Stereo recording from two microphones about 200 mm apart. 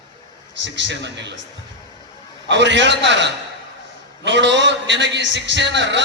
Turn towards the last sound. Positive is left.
turn(degrees=-60)  # may be behind; listen again after turning